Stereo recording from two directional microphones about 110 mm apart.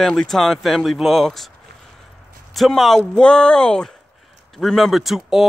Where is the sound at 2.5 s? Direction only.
Centre (ahead or behind).